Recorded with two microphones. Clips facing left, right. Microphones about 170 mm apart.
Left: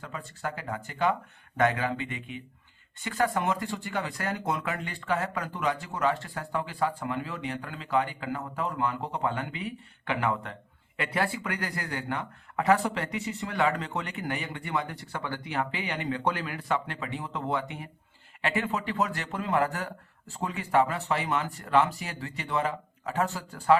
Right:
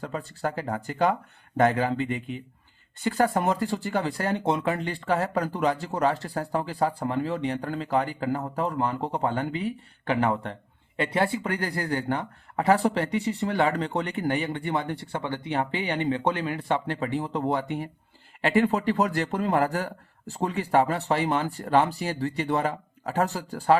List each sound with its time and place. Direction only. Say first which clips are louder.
0.0 s speech: right 6 dB; 35° right (ahead or behind)